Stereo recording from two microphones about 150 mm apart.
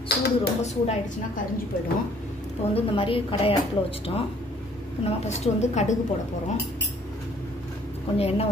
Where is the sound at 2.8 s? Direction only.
40° left (ahead or behind).